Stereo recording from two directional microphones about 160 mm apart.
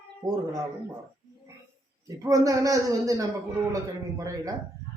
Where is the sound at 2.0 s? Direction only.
20° right (ahead or behind).